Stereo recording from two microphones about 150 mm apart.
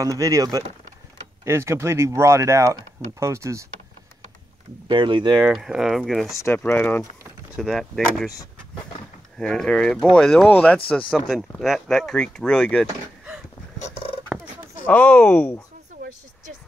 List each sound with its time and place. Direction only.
0.0 s speech: 20° right (ahead or behind)
4.8 s speech: 30° right (ahead or behind)
5.4 s speech: 5° right (ahead or behind)
6.3 s speech: 15° left (ahead or behind)
7.5 s speech: centre (ahead or behind)
9.4 s speech: 5° left (ahead or behind)
13.7 s fowl: 45° left (ahead or behind)
14.9 s speech: 10° left (ahead or behind)